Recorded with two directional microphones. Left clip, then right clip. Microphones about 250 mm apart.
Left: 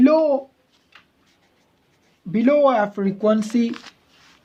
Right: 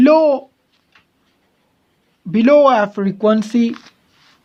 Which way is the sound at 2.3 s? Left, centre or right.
Right.